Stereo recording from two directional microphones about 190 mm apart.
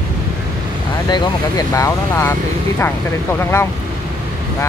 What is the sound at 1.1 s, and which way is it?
Speech, 15° left (ahead or behind).